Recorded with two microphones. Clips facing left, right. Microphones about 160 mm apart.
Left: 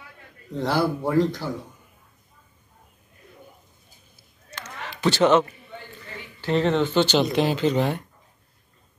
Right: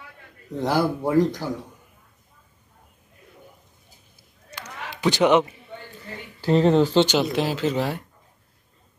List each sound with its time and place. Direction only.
0.6 s speech: 15° right (ahead or behind)
4.5 s a sound: 15° right (ahead or behind)
6.4 s speech: 40° right (ahead or behind)
7.1 s speech: 5° right (ahead or behind)